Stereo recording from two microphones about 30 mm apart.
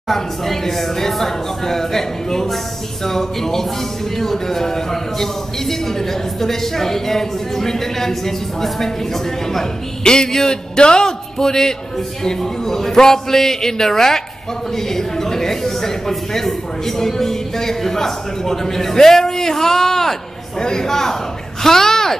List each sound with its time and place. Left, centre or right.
0.1 s a man's voice: centre
10.0 s a man's voice: left
21.6 s a sound: centre